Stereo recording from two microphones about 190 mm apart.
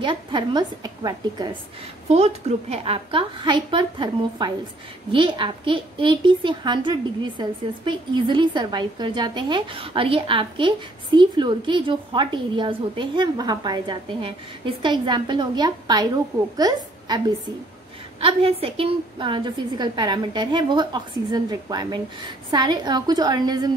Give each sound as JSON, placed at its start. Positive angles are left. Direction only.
{"t": 0.0, "sound": "a woman's voice", "side_deg": -25}
{"t": 2.0, "sound": "a woman's voice", "side_deg": -35}
{"t": 18.2, "sound": "a woman's voice", "side_deg": -30}